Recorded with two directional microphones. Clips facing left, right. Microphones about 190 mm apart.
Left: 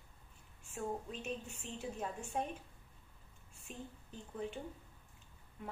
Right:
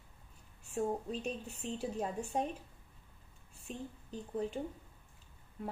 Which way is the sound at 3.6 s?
35° right (ahead or behind).